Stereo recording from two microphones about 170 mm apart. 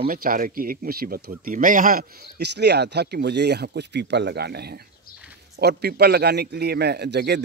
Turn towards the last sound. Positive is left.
turn(degrees=-80)